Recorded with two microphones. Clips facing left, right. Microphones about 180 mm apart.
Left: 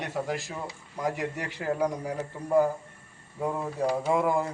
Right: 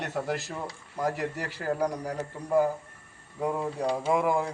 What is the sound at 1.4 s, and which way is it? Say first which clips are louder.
Speech: left 1 dB; 15° left (ahead or behind).